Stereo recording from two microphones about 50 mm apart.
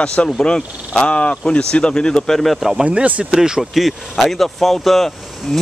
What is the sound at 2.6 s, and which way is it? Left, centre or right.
Speech, centre.